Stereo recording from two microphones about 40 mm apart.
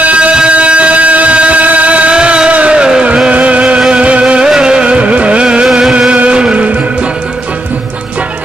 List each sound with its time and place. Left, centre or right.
0.0 s a sound: right
2.5 s music: right
2.8 s vehicle: right
3.3 s music: right